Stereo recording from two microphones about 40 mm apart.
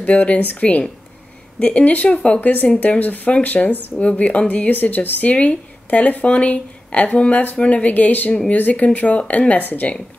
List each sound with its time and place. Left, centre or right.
0.0 s speech: left